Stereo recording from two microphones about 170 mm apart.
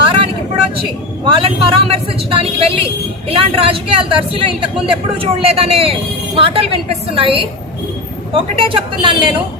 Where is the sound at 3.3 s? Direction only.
35° right (ahead or behind).